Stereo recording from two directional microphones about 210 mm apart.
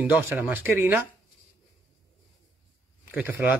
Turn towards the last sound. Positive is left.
turn(degrees=-10)  # may be behind; listen again after turning